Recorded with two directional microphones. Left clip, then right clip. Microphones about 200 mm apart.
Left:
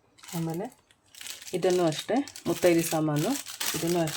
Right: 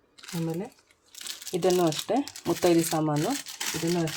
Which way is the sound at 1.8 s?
15° left (ahead or behind).